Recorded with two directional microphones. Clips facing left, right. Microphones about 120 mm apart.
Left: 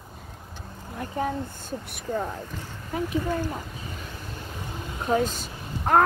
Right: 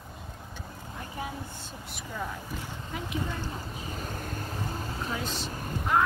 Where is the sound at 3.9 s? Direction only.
45° right (ahead or behind).